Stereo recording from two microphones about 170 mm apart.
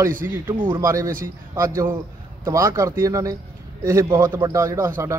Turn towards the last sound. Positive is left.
turn(degrees=-20)  # may be behind; listen again after turning